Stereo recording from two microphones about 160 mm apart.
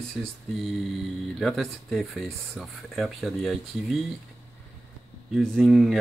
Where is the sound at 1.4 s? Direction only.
Centre (ahead or behind).